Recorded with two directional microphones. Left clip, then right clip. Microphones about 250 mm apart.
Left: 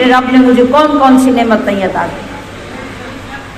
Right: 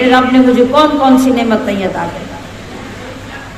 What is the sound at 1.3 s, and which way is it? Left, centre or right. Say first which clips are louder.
Speech: left 3 dB; centre.